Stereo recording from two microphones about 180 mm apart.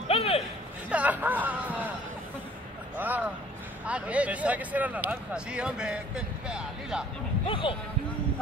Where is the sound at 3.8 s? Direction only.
5° right (ahead or behind).